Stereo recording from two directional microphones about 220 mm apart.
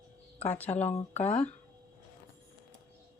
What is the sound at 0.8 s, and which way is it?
Speech, 10° left (ahead or behind).